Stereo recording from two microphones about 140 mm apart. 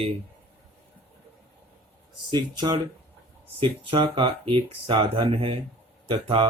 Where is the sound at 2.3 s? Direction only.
35° right (ahead or behind).